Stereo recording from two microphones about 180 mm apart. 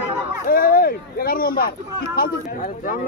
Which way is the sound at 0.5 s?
55° left (ahead or behind).